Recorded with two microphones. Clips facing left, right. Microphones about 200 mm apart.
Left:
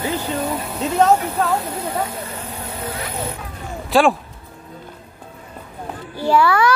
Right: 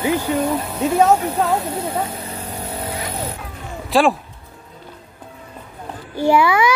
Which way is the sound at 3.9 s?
Centre (ahead or behind).